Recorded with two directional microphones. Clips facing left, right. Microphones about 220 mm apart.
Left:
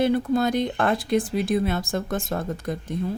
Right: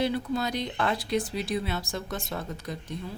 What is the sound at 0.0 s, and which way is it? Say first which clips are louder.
Speech: left 7 dB; 50° left (ahead or behind).